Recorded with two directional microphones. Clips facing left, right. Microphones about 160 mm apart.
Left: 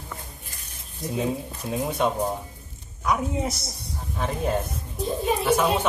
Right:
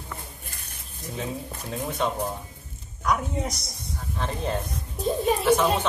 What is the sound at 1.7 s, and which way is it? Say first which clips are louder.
A woman's voice: left 3 dB; 10° left (ahead or behind).